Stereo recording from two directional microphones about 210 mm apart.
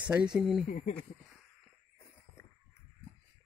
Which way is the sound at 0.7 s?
35° left (ahead or behind).